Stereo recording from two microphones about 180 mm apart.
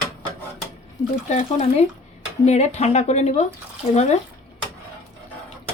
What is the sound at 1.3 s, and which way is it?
Speech, 40° left (ahead or behind).